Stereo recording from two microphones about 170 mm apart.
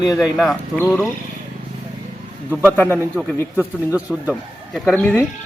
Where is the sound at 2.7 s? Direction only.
10° left (ahead or behind).